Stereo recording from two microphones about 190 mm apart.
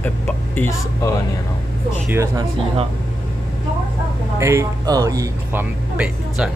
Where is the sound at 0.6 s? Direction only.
15° left (ahead or behind).